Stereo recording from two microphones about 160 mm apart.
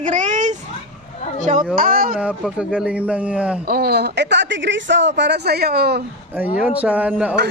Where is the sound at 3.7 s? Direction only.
75° right (ahead or behind).